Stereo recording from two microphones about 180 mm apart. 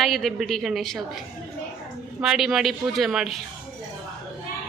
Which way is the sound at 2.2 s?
Centre (ahead or behind).